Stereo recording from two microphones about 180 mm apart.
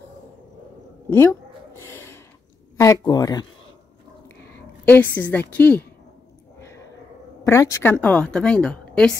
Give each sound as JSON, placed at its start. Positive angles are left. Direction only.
{"t": 1.1, "sound": "a sound", "side_deg": 15}
{"t": 2.8, "sound": "speech", "side_deg": 20}
{"t": 4.8, "sound": "a woman's voice", "side_deg": 10}
{"t": 7.4, "sound": "a woman's voice", "side_deg": 10}